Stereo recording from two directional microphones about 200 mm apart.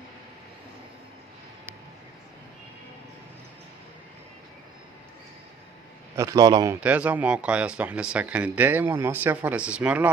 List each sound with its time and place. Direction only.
6.1 s speech: 15° right (ahead or behind)
6.8 s speech: 5° right (ahead or behind)